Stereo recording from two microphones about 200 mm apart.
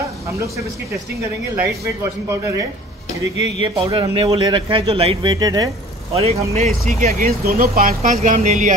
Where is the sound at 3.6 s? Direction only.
25° right (ahead or behind).